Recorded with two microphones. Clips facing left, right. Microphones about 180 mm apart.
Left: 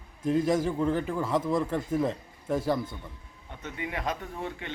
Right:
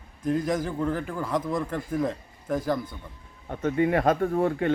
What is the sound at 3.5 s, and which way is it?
Speech, 45° right (ahead or behind).